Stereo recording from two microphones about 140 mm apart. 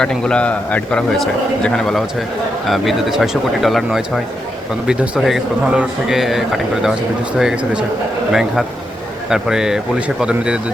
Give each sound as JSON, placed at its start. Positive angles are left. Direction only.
{"t": 0.0, "sound": "a man's voice", "side_deg": 5}